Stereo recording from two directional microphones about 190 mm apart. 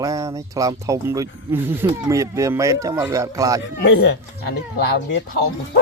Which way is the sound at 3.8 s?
70° left (ahead or behind).